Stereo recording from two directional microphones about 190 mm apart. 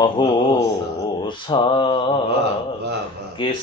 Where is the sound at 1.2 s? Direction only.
25° left (ahead or behind).